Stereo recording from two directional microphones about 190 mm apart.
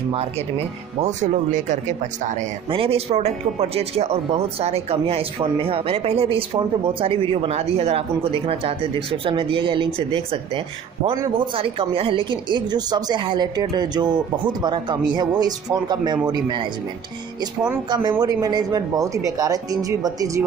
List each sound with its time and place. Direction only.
1.0 s a man's voice: 40° right (ahead or behind); by 16.6 s 25° right (ahead or behind)
17.8 s speech: 25° right (ahead or behind)